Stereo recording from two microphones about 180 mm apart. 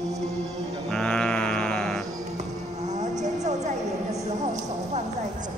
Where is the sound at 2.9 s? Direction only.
40° right (ahead or behind).